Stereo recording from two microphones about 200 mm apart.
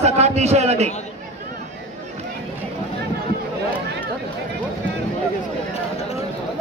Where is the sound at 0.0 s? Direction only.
35° right (ahead or behind).